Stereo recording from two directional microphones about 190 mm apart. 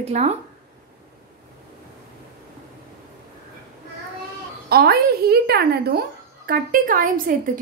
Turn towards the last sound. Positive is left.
turn(degrees=-45)  # may be behind; listen again after turning